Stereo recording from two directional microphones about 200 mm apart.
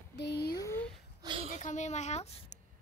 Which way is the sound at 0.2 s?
55° left (ahead or behind).